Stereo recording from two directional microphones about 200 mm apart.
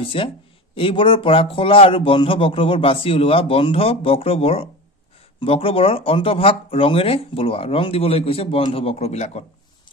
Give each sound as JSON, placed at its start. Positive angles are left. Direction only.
{"t": 0.0, "sound": "speech", "side_deg": 25}